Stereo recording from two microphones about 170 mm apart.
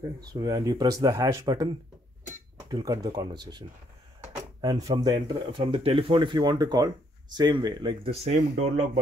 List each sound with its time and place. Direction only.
0.2 s speech: 25° right (ahead or behind)
2.7 s speech: 20° right (ahead or behind)
4.6 s speech: 25° right (ahead or behind); by 9.0 s 40° right (ahead or behind)